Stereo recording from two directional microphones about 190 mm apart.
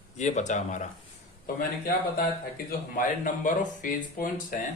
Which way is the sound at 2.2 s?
50° left (ahead or behind).